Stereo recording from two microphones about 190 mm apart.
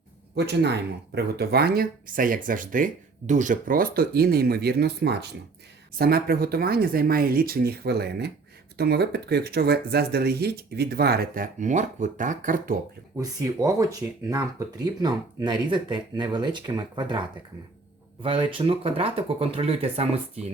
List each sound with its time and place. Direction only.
0.3 s speech: 60° right (ahead or behind); by 12.8 s 45° right (ahead or behind)
13.1 s speech: 15° right (ahead or behind)